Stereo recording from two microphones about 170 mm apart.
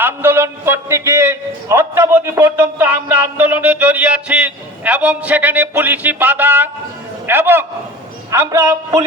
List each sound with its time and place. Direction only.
0.0 s a man's voice: 15° right (ahead or behind)